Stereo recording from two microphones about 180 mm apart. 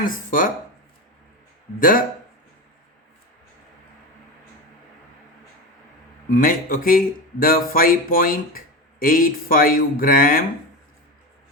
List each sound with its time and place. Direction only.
0.0 s speech: 50° left (ahead or behind)
1.8 s speech: 50° left (ahead or behind)
6.3 s speech: 50° left (ahead or behind)